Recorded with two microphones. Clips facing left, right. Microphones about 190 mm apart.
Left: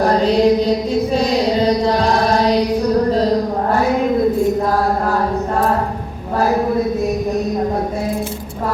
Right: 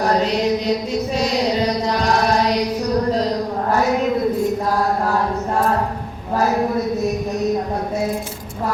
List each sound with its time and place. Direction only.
0.0 s mantra: 35° left (ahead or behind)